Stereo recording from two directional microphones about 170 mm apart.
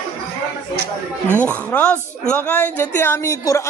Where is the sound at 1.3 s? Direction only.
10° left (ahead or behind).